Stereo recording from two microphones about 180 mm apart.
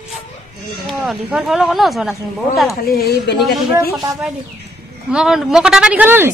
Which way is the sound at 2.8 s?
60° left (ahead or behind).